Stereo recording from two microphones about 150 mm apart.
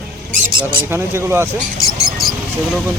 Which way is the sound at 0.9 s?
15° right (ahead or behind).